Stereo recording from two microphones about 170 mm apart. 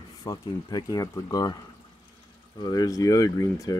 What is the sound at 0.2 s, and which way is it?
Speech, 25° left (ahead or behind).